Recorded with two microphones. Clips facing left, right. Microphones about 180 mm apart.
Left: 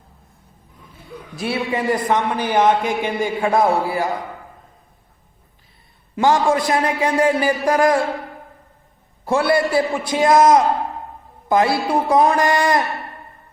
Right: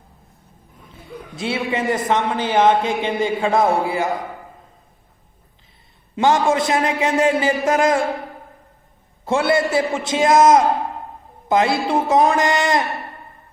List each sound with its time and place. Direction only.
1.4 s speech: 25° right (ahead or behind)
6.1 s speech: 20° right (ahead or behind)
9.2 s speech: 20° right (ahead or behind)